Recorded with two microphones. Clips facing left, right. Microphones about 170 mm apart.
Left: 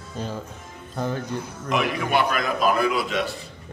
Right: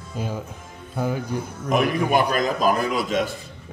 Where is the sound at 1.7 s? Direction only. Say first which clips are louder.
Right 4 dB; 45° right (ahead or behind).